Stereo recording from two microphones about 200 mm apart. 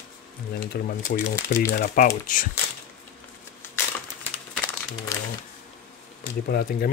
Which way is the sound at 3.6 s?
10° left (ahead or behind).